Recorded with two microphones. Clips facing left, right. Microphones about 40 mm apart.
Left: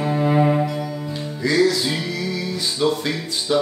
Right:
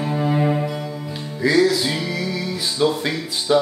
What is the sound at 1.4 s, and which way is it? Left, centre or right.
Music, centre.